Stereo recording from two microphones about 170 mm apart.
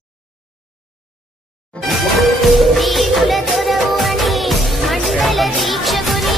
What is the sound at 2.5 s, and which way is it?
Music, centre (ahead or behind).